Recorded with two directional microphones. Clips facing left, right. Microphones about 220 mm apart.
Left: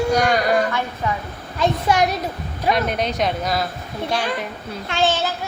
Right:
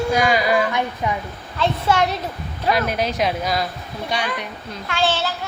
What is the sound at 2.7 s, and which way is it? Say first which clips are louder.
Speech: even; centre (ahead or behind).